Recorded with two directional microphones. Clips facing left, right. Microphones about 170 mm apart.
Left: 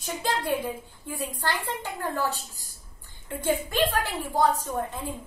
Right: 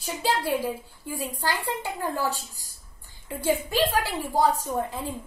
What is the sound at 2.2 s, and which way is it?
Speech, 40° right (ahead or behind).